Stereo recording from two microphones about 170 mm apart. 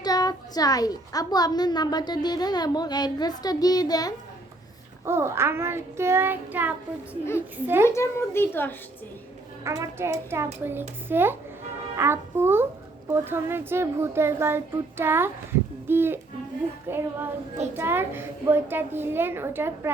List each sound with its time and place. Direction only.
0.0 s a woman's voice: 25° left (ahead or behind)
5.0 s a child's voice: 15° right (ahead or behind)
7.9 s a woman's voice: 15° left (ahead or behind)
9.6 s a child's voice: 20° right (ahead or behind)